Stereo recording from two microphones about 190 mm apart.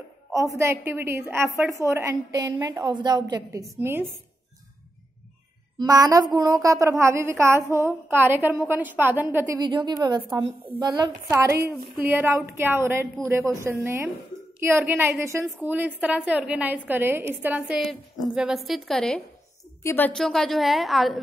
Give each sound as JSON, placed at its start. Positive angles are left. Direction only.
{"t": 0.3, "sound": "a woman's voice", "side_deg": -15}
{"t": 5.8, "sound": "a woman's voice", "side_deg": -20}
{"t": 9.6, "sound": "a woman's voice", "side_deg": -20}